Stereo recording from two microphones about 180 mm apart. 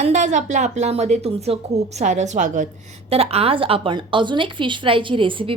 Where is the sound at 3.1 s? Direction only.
35° right (ahead or behind).